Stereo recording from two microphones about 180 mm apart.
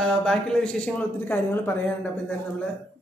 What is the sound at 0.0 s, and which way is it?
Speech, 5° left (ahead or behind).